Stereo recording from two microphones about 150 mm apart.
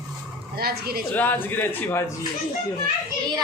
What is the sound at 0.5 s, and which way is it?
Speech, 90° right.